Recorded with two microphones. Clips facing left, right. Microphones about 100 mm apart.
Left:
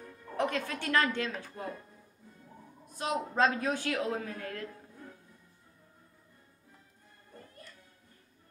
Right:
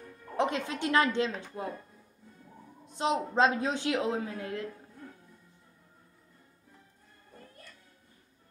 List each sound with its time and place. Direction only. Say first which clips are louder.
0.4 s a woman's voice: right 3 dB; 20° right (ahead or behind)
2.9 s a woman's voice: right 4 dB; 20° right (ahead or behind)